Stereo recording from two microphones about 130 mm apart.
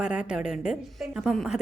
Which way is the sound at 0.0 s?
5° right (ahead or behind).